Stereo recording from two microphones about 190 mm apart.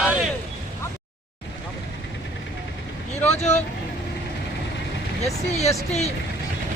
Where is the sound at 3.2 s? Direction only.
35° left (ahead or behind).